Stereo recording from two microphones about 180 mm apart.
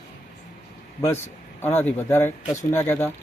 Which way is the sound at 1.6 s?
10° left (ahead or behind).